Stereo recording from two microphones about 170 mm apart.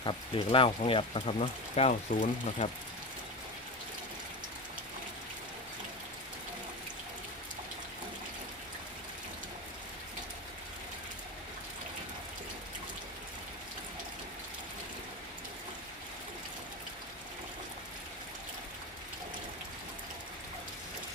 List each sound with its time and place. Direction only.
0.0 s speech: 30° left (ahead or behind)